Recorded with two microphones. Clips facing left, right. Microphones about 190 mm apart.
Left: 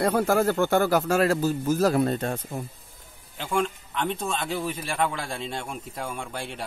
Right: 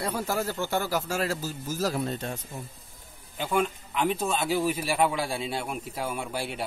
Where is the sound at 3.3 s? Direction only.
5° right (ahead or behind).